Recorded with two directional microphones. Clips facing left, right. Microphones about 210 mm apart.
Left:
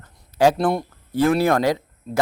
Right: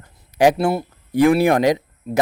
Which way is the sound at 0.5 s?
5° right (ahead or behind).